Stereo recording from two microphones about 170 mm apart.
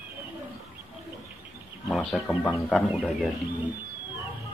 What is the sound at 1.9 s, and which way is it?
Speech, 5° left (ahead or behind).